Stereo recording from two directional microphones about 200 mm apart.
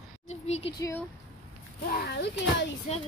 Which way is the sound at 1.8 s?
50° left (ahead or behind).